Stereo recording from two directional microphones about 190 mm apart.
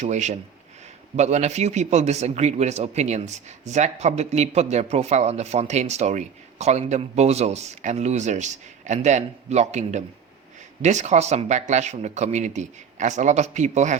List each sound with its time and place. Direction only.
0.0 s a man's voice: 40° right (ahead or behind)